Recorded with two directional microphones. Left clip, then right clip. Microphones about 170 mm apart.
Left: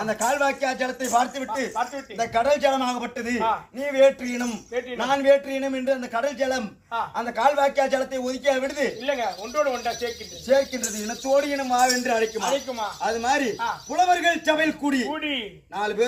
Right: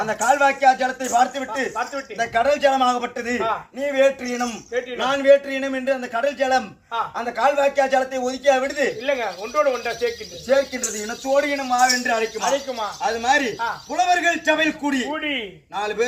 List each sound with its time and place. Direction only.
0.0 s a man's voice: 15° left (ahead or behind)
9.0 s a man's voice: centre (ahead or behind)
15.1 s a man's voice: 5° right (ahead or behind)
15.7 s a man's voice: 5° left (ahead or behind)